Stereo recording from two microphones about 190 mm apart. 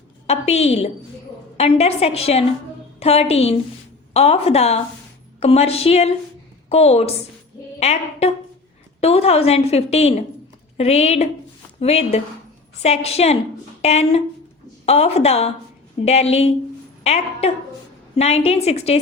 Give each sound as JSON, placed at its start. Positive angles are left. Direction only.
{"t": 0.3, "sound": "a woman's voice", "side_deg": 35}